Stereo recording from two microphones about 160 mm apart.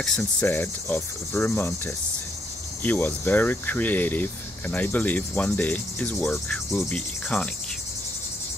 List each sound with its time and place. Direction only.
0.0 s cricket: centre (ahead or behind)
0.5 s speech: 15° left (ahead or behind)
2.8 s speech: 10° left (ahead or behind)
6.8 s cricket: 5° left (ahead or behind)